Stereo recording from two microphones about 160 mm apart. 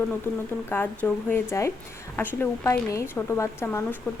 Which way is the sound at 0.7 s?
10° left (ahead or behind).